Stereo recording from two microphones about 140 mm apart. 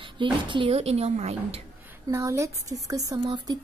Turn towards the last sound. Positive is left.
turn(degrees=-30)  # may be behind; listen again after turning